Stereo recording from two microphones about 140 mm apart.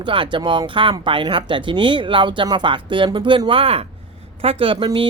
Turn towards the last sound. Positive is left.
turn(degrees=-40)  # may be behind; listen again after turning